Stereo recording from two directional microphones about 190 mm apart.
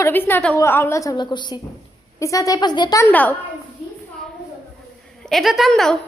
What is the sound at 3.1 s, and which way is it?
Speech, 10° left (ahead or behind).